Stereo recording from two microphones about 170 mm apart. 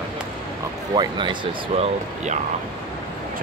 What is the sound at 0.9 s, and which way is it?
Speech, 30° right (ahead or behind).